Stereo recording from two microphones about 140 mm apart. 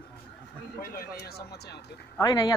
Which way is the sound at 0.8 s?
90° left.